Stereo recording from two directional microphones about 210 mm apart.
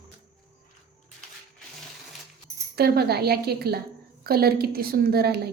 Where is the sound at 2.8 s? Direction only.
50° right (ahead or behind).